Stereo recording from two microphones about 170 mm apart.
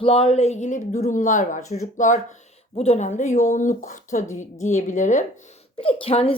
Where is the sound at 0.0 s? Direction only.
35° left (ahead or behind).